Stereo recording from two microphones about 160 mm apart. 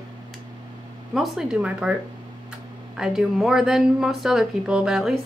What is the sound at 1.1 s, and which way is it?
Speech, 5° right (ahead or behind).